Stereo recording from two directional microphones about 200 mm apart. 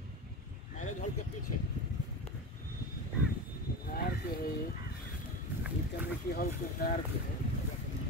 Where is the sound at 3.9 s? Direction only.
45° left (ahead or behind).